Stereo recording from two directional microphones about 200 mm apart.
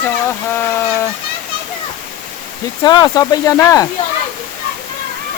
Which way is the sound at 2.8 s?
20° left (ahead or behind).